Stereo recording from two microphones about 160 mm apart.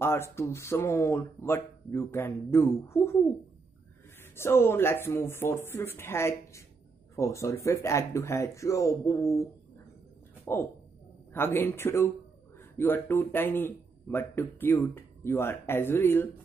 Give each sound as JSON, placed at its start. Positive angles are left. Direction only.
{"t": 0.0, "sound": "a man's voice", "side_deg": 15}
{"t": 4.2, "sound": "a man's voice", "side_deg": 15}